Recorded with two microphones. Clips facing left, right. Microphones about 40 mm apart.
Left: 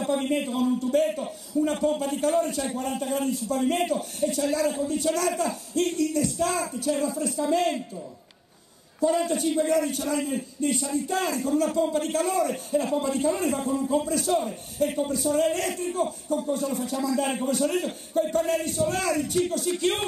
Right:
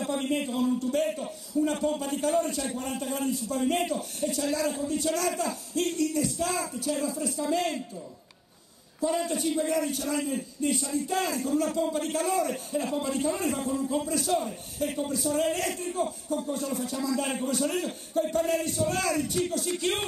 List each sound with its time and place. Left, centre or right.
0.0 s a man's voice: centre
6.6 s a man's voice: centre
9.0 s a man's voice: centre
11.1 s a man's voice: centre